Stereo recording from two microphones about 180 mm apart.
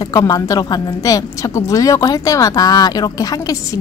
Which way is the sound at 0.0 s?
20° left (ahead or behind).